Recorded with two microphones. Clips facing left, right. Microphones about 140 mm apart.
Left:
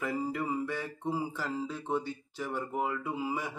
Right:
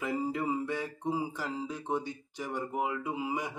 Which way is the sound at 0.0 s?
25° right (ahead or behind).